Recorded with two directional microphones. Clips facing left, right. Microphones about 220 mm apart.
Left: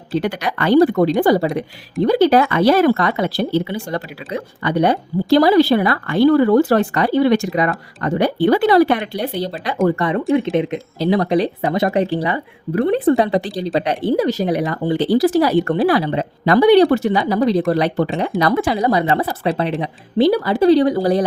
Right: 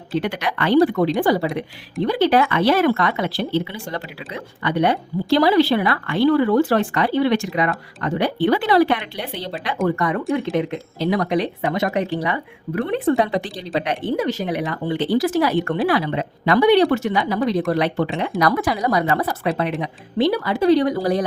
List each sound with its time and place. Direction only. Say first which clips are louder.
0.2 s speech: left 2 dB; 40° left (ahead or behind); by 10.8 s 20° left (ahead or behind)
11.0 s speech: left 4 dB; 30° left (ahead or behind)